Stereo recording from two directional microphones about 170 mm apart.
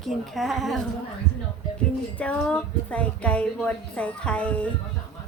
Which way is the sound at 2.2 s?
5° left (ahead or behind).